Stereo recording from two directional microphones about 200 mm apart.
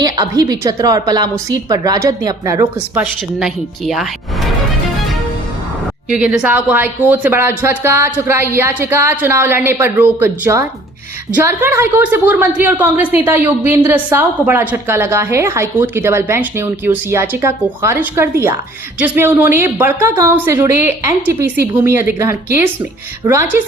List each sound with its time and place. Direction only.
0.0 s a woman's voice: 15° right (ahead or behind)
3.0 s a woman's voice: centre (ahead or behind)
6.1 s a woman's voice: 5° right (ahead or behind)